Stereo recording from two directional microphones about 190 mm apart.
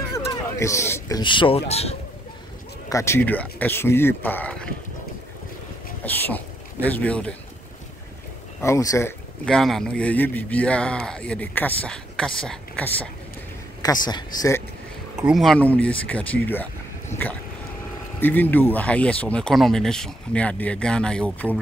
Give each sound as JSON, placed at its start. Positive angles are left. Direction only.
{"t": 0.3, "sound": "speech", "side_deg": 15}
{"t": 2.9, "sound": "speech", "side_deg": 15}
{"t": 6.0, "sound": "speech", "side_deg": 10}
{"t": 8.6, "sound": "speech", "side_deg": 15}
{"t": 9.5, "sound": "speech", "side_deg": 0}
{"t": 14.0, "sound": "speech", "side_deg": 20}
{"t": 15.1, "sound": "speech", "side_deg": -5}
{"t": 18.2, "sound": "speech", "side_deg": 10}